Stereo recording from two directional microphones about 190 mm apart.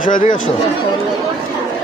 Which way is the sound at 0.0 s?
45° left (ahead or behind).